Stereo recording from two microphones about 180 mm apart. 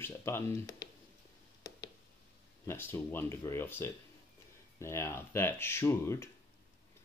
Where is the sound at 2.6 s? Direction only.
10° left (ahead or behind).